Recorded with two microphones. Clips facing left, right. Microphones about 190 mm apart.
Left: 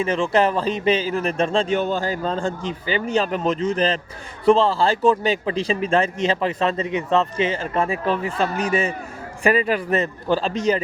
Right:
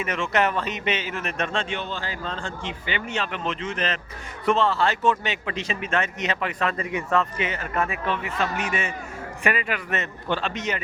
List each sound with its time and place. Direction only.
0.0 s speech: 30° left (ahead or behind)